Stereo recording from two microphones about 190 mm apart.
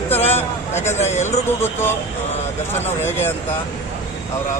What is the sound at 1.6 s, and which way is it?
Speech, 10° left (ahead or behind).